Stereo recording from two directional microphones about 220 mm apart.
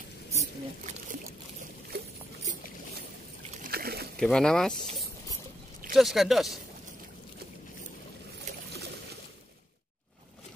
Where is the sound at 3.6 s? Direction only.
45° right (ahead or behind).